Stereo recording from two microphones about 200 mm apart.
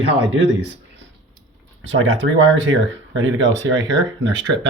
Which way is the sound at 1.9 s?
70° right (ahead or behind).